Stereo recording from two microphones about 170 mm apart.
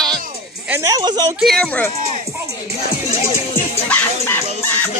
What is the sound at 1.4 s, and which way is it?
Speech, centre (ahead or behind).